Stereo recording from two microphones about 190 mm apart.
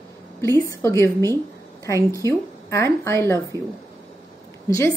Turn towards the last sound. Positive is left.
turn(degrees=15)  # may be behind; listen again after turning